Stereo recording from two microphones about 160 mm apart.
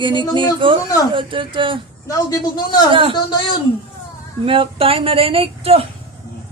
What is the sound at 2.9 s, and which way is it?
Speech, 30° right (ahead or behind).